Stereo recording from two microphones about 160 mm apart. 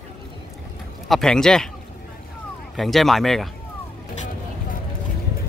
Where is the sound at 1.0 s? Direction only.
Centre (ahead or behind).